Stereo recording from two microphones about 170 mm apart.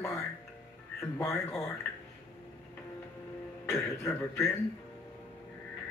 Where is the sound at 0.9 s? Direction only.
15° left (ahead or behind).